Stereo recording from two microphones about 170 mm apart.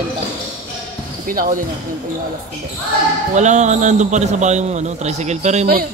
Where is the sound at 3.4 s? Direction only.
45° right (ahead or behind).